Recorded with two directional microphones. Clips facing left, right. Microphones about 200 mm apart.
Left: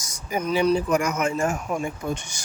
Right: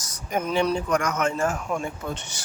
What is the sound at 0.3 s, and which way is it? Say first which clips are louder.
Speech: left 2 dB; centre (ahead or behind).